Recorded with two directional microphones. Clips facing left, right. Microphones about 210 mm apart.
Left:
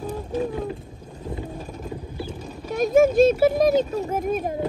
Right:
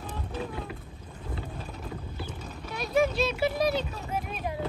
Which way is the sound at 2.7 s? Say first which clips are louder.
Left 9 dB; 45° left (ahead or behind).